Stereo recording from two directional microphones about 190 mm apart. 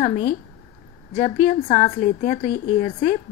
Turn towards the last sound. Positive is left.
turn(degrees=40)  # may be behind; listen again after turning